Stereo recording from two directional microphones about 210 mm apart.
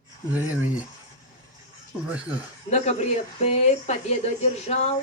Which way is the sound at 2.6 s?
30° left (ahead or behind).